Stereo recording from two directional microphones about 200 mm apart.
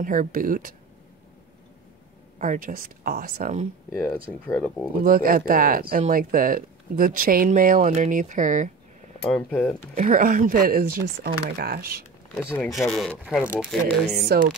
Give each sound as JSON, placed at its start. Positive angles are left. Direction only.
{"t": 0.0, "sound": "speech", "side_deg": -40}
{"t": 2.3, "sound": "speech", "side_deg": -40}
{"t": 3.9, "sound": "speech", "side_deg": 10}
{"t": 5.0, "sound": "speech", "side_deg": -45}
{"t": 9.2, "sound": "speech", "side_deg": 10}
{"t": 9.9, "sound": "speech", "side_deg": -45}
{"t": 12.5, "sound": "speech", "side_deg": 0}
{"t": 14.3, "sound": "speech", "side_deg": -50}